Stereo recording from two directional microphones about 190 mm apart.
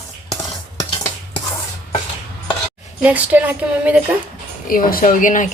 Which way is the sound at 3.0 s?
10° right (ahead or behind).